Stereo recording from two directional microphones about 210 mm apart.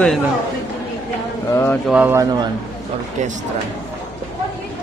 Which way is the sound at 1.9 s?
10° right (ahead or behind).